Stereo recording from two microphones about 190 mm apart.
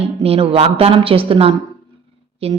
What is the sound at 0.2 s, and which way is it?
A woman's voice, 30° right (ahead or behind).